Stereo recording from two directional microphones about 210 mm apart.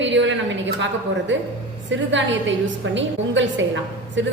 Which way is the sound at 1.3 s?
60° right (ahead or behind).